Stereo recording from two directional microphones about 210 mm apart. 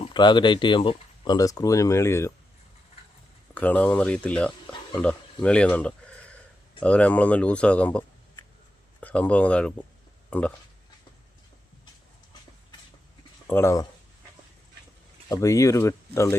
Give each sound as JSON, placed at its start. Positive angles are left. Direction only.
{"t": 0.0, "sound": "speech", "side_deg": 20}
{"t": 3.5, "sound": "speech", "side_deg": 5}
{"t": 13.5, "sound": "speech", "side_deg": 10}
{"t": 15.3, "sound": "speech", "side_deg": 15}